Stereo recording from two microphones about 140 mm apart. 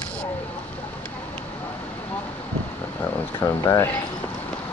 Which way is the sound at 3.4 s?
15° left (ahead or behind).